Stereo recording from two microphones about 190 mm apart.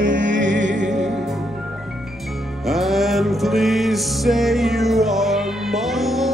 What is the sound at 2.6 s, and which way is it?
Music, centre (ahead or behind).